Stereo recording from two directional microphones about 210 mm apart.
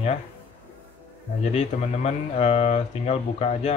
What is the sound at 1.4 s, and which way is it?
Speech, 30° left (ahead or behind).